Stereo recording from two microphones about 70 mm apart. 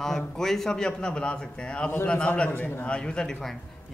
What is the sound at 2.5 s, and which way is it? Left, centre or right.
Speech, left.